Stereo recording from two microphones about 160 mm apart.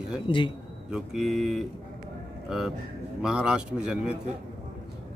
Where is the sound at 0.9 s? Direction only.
5° right (ahead or behind).